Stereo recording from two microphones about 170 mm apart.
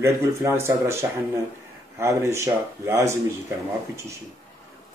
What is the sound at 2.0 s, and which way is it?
Speech, 15° right (ahead or behind).